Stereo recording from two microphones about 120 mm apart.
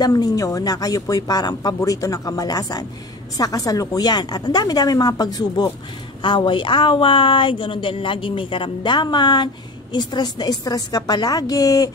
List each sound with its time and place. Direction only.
0.0 s a woman's voice: 35° left (ahead or behind)